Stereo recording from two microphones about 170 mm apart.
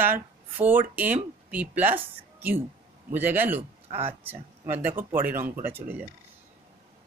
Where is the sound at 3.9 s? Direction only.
35° right (ahead or behind).